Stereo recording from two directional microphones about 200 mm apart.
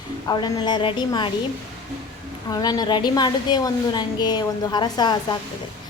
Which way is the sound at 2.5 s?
20° left (ahead or behind).